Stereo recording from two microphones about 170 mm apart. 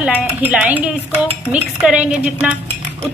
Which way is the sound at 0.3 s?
10° right (ahead or behind).